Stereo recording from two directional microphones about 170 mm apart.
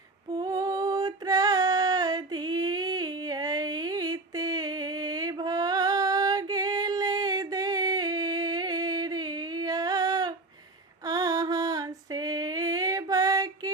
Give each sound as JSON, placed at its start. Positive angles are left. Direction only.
{"t": 0.3, "sound": "female singing", "side_deg": -20}